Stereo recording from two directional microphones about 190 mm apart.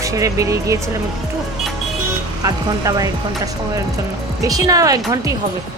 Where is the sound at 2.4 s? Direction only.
20° right (ahead or behind).